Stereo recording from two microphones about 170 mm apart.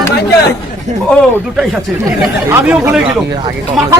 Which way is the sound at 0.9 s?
45° right (ahead or behind).